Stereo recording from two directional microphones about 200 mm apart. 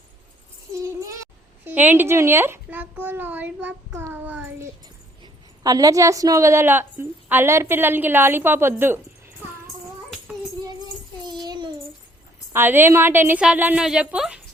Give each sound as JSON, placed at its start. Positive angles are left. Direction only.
{"t": 0.7, "sound": "a sound", "side_deg": -15}
{"t": 1.6, "sound": "a child's voice", "side_deg": -10}
{"t": 11.3, "sound": "child singing", "side_deg": -20}
{"t": 12.5, "sound": "a woman's voice", "side_deg": -10}